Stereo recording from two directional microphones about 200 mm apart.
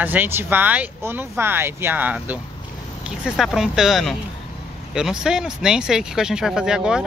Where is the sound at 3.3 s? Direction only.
Centre (ahead or behind).